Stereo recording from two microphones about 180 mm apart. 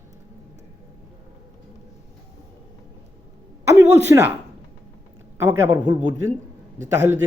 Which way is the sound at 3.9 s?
15° right (ahead or behind).